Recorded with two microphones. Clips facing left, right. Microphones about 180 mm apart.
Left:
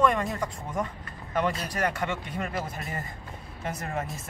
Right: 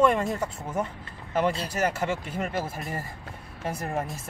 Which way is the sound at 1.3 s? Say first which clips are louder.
Right 2 dB; 30° right (ahead or behind).